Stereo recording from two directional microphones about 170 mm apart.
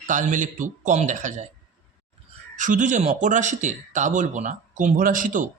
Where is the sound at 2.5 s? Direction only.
50° right (ahead or behind).